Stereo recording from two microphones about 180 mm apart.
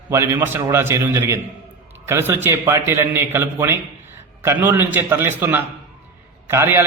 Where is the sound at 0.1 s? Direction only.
15° right (ahead or behind).